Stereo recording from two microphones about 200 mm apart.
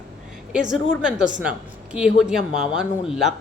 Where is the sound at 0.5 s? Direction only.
5° right (ahead or behind).